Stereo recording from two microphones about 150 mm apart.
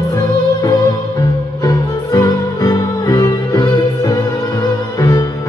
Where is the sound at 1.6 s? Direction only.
25° left (ahead or behind).